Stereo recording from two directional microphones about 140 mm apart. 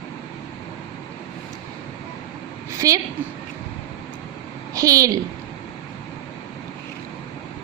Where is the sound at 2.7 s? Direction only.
25° right (ahead or behind).